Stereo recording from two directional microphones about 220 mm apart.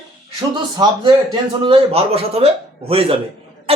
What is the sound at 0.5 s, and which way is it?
A man's voice, 20° right (ahead or behind).